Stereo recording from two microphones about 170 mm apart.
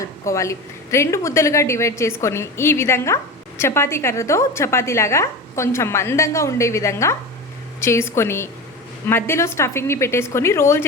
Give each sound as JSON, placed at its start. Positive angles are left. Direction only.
{"t": 0.0, "sound": "a woman's voice", "side_deg": 20}